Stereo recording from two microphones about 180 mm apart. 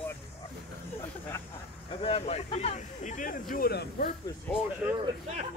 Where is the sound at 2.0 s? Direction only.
35° left (ahead or behind).